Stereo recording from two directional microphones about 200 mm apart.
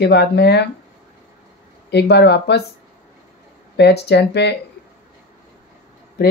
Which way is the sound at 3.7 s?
55° left (ahead or behind).